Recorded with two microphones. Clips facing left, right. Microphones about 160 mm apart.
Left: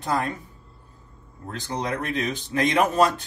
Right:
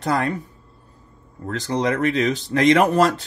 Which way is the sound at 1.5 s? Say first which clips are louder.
Right 7 dB; 90° right.